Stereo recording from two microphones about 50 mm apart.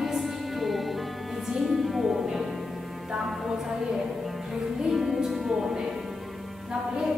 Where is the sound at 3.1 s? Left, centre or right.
Centre.